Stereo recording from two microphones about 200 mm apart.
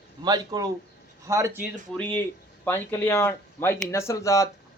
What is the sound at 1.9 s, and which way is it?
Speech, 10° left (ahead or behind).